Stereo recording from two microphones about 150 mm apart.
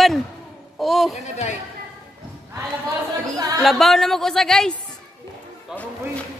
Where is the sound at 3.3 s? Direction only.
25° right (ahead or behind).